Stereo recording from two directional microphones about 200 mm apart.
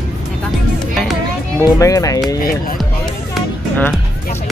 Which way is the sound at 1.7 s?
15° left (ahead or behind).